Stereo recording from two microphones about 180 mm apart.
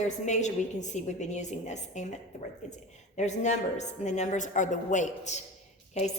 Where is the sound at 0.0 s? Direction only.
40° left (ahead or behind).